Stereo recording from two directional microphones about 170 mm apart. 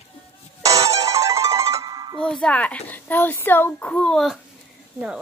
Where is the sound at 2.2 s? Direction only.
5° left (ahead or behind).